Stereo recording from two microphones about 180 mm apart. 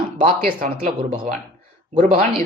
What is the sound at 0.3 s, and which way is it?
Speech, 50° right (ahead or behind).